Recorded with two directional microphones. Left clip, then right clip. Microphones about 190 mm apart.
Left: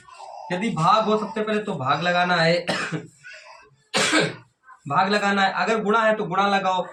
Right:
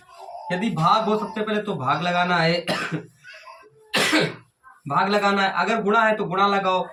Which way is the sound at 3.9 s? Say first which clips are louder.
Even; 25° right (ahead or behind).